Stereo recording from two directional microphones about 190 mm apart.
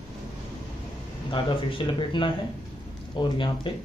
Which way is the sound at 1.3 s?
25° left (ahead or behind).